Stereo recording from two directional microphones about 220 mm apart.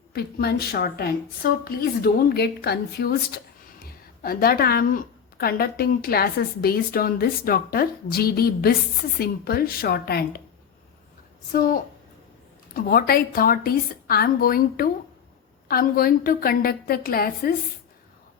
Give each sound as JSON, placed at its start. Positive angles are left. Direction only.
{"t": 0.1, "sound": "a woman's voice", "side_deg": 45}
{"t": 11.5, "sound": "a woman's voice", "side_deg": 40}